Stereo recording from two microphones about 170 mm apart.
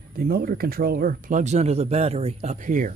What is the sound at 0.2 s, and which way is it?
Speech, 60° right (ahead or behind).